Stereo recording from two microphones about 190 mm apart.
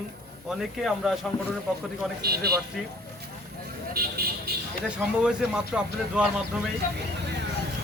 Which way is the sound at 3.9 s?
55° right (ahead or behind).